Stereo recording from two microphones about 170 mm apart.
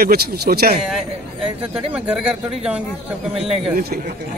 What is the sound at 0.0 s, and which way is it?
Speech, 60° right (ahead or behind).